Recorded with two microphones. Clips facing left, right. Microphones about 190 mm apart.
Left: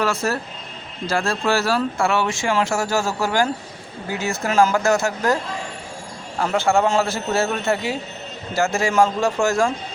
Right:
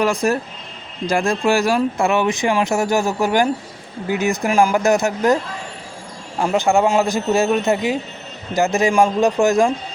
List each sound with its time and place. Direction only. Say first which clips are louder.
0.0 s speech: right 4 dB; 15° right (ahead or behind)
6.4 s speech: right 2 dB; 15° right (ahead or behind)